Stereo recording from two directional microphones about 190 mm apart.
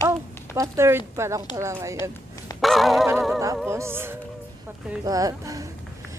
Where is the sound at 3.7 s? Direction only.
15° right (ahead or behind).